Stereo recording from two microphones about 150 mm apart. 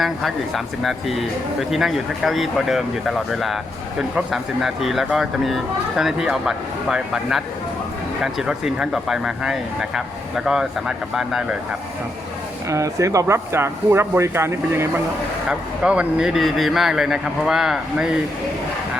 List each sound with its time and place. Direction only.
0.0 s speech: centre (ahead or behind)
12.6 s speech: 20° right (ahead or behind)
15.4 s speech: 5° right (ahead or behind)